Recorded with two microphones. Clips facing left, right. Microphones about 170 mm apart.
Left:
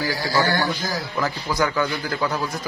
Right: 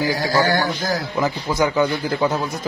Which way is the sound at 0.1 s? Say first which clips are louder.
Right 3 dB; 45° right (ahead or behind).